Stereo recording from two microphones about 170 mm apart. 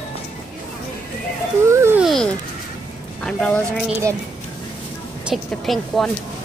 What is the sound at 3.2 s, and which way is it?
Speech, 5° left (ahead or behind).